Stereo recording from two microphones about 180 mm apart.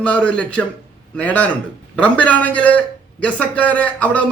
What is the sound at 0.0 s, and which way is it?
A man's voice, 5° left (ahead or behind).